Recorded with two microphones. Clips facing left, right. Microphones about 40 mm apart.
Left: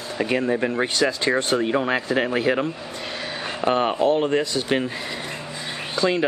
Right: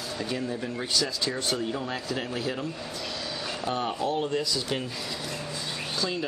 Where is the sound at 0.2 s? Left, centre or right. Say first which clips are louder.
Left 11 dB; left.